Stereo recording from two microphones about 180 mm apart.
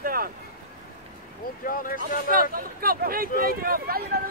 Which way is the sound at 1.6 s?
50° left (ahead or behind).